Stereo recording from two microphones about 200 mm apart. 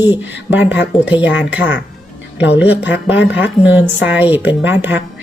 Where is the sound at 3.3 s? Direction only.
10° right (ahead or behind).